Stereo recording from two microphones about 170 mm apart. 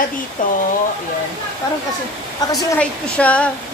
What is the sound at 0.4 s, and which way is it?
Speech, 50° left (ahead or behind).